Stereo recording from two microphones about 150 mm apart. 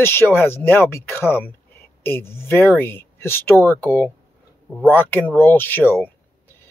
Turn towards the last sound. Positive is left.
turn(degrees=15)  # may be behind; listen again after turning